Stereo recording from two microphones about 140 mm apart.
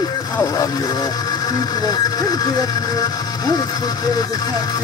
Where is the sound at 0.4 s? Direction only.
25° left (ahead or behind).